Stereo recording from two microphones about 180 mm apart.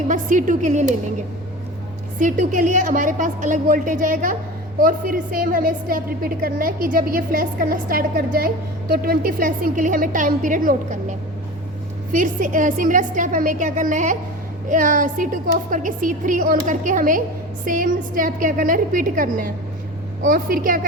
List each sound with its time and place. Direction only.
0.1 s a woman's voice: 45° right (ahead or behind)
2.1 s a woman's voice: 45° right (ahead or behind)
12.1 s a woman's voice: 45° right (ahead or behind)